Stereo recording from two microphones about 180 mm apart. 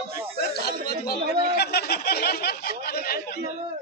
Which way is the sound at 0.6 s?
60° left (ahead or behind).